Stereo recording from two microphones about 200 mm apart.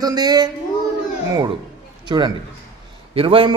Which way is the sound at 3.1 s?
25° right (ahead or behind).